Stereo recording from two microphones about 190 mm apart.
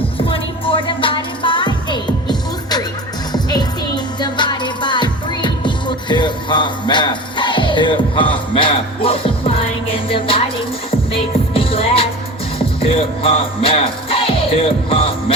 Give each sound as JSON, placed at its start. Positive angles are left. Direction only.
{"t": 0.3, "sound": "music", "side_deg": 30}